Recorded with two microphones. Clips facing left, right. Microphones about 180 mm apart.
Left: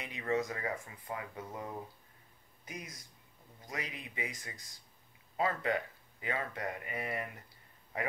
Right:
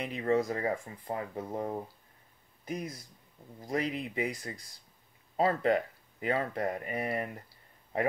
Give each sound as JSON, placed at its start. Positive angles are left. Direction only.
{"t": 0.0, "sound": "speech", "side_deg": -35}